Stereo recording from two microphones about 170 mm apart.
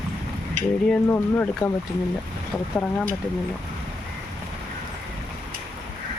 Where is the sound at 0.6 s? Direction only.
45° right (ahead or behind).